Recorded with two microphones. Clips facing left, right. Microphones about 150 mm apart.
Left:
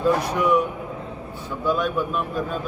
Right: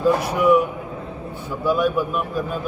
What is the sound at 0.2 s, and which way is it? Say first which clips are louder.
Speech: right 4 dB; 5° right (ahead or behind).